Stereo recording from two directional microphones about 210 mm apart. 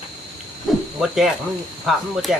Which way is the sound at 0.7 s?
Centre (ahead or behind).